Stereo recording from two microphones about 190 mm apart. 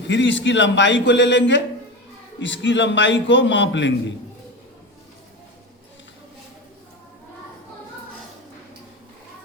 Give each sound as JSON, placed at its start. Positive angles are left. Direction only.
{"t": 0.1, "sound": "a man's voice", "side_deg": 70}